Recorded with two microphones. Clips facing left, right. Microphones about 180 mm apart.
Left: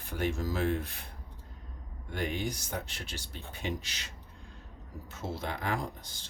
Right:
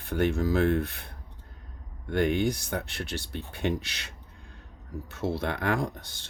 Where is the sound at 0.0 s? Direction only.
65° right (ahead or behind).